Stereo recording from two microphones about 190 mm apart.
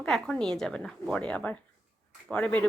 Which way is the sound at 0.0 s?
5° left (ahead or behind).